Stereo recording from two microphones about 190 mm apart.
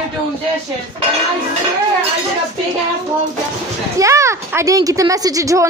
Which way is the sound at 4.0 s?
15° right (ahead or behind).